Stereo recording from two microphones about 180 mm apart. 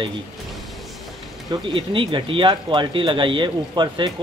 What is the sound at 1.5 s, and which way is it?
Speech, 30° right (ahead or behind).